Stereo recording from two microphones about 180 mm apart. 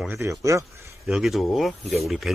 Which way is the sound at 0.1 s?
15° right (ahead or behind).